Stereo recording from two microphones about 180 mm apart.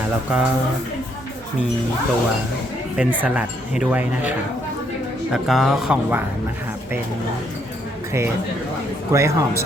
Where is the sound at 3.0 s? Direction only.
10° right (ahead or behind).